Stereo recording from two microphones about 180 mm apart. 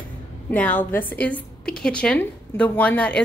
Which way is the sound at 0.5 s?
10° left (ahead or behind).